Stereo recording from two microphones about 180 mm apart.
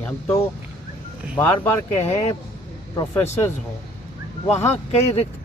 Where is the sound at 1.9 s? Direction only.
35° left (ahead or behind).